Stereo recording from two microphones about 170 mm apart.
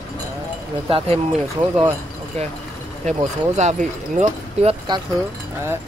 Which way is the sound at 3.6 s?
45° right (ahead or behind).